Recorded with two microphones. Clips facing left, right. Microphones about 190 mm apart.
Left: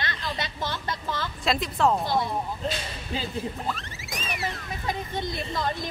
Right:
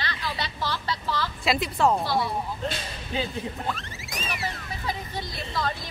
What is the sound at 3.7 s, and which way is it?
Speech, centre (ahead or behind).